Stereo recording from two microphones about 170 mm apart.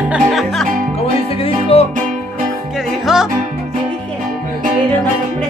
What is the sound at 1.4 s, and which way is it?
Music, 35° left (ahead or behind).